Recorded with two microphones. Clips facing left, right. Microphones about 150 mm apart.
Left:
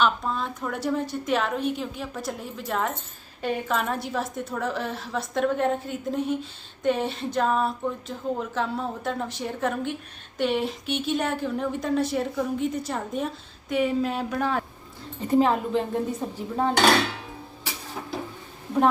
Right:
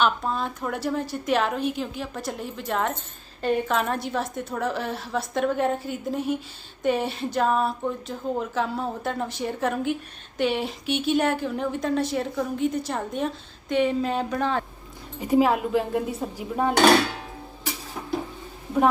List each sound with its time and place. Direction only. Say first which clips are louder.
0.0 s speech: right 1 dB; centre (ahead or behind)
15.2 s speech: right 1 dB; 10° right (ahead or behind)